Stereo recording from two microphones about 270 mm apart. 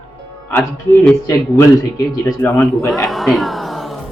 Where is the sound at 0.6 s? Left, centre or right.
Centre.